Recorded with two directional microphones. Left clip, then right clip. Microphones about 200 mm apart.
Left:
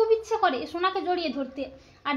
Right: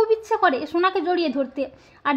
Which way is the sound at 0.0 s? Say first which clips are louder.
Right 4 dB; 50° right (ahead or behind).